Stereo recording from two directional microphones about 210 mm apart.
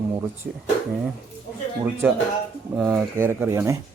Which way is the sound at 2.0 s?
10° right (ahead or behind).